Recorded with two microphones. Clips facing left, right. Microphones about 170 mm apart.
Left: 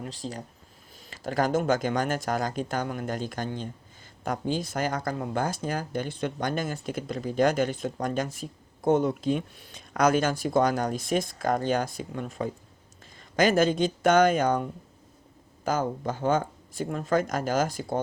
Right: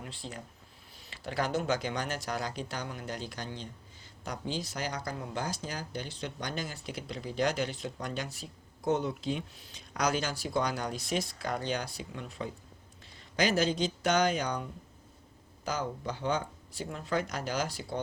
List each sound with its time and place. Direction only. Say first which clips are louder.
0.0 s speech: left 7 dB; 40° left (ahead or behind)